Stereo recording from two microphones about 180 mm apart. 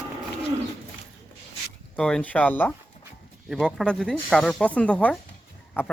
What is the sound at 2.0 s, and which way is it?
Speech, 5° left (ahead or behind).